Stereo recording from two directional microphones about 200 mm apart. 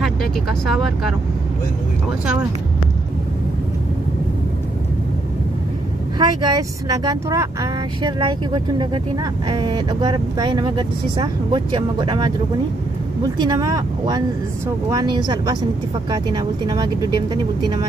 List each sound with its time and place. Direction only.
0.7 s speech: centre (ahead or behind)
6.1 s speech: 20° right (ahead or behind)
13.4 s speech: 20° right (ahead or behind)